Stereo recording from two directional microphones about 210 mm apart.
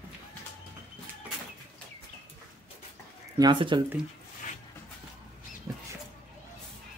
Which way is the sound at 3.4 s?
20° right (ahead or behind).